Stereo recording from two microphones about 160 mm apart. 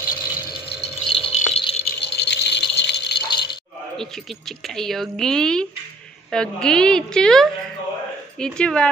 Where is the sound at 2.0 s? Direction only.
90° left.